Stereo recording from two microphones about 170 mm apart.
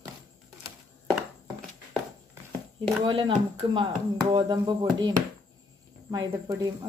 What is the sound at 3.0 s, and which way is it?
Speech, 30° right (ahead or behind).